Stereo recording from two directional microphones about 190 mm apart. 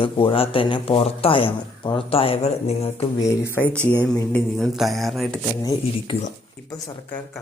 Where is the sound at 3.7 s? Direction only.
10° right (ahead or behind).